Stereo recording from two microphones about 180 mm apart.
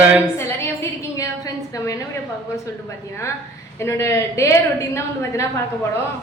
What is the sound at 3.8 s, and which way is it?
A woman's voice, 15° left (ahead or behind).